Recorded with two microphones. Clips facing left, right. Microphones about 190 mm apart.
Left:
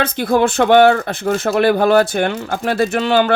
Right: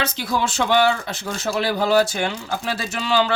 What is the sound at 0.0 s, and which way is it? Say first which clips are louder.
Speech: left 8 dB; 55° left (ahead or behind).